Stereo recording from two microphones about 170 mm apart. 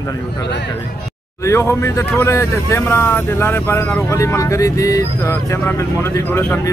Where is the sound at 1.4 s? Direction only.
15° left (ahead or behind).